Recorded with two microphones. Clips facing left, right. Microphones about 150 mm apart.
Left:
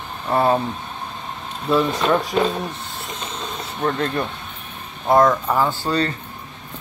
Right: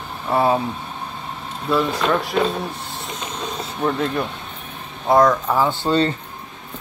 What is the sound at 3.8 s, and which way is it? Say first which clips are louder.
Speech: right 1 dB; 5° right (ahead or behind).